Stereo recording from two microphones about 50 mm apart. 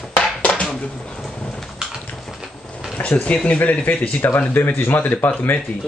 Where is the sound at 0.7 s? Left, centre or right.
Centre.